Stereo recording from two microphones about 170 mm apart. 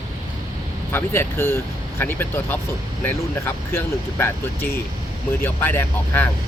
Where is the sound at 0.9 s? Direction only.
15° left (ahead or behind).